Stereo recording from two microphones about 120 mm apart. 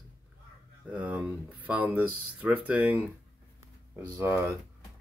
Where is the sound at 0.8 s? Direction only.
10° right (ahead or behind).